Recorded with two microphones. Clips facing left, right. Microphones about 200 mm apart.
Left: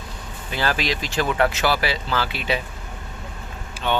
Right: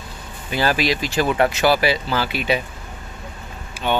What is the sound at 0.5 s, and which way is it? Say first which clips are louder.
Speech: right 4 dB; 10° right (ahead or behind).